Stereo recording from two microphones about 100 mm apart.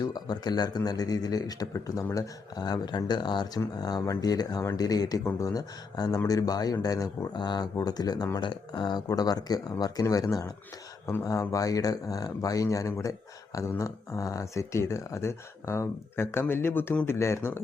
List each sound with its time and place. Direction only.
0.0 s speech: 45° left (ahead or behind); by 17.1 s 15° left (ahead or behind)
17.1 s speech: 25° left (ahead or behind)